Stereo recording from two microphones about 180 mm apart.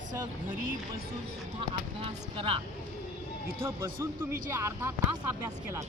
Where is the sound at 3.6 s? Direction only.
15° right (ahead or behind).